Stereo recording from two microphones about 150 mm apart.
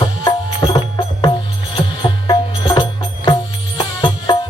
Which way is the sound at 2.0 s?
30° left (ahead or behind).